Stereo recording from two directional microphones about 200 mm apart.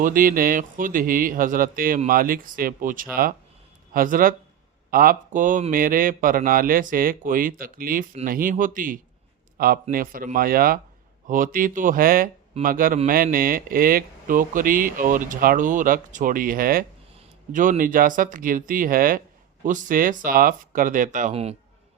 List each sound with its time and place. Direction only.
0.0 s speech: 45° right (ahead or behind)